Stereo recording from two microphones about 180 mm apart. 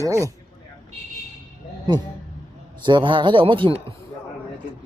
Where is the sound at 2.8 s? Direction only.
25° right (ahead or behind).